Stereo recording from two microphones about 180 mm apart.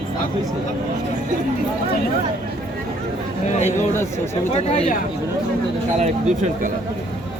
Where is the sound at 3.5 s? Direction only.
35° left (ahead or behind).